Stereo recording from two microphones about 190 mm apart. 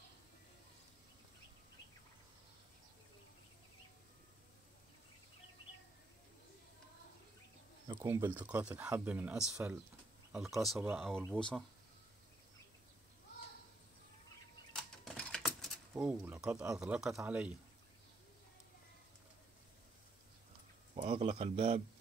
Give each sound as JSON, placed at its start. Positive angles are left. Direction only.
{"t": 7.9, "sound": "speech", "side_deg": -15}
{"t": 14.7, "sound": "a sound", "side_deg": 0}
{"t": 15.9, "sound": "speech", "side_deg": -5}
{"t": 20.9, "sound": "a man's voice", "side_deg": -35}